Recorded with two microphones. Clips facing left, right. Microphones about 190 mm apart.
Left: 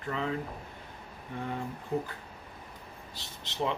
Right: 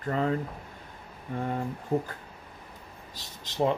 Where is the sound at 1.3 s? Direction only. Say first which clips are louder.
Right 5 dB; 45° right (ahead or behind).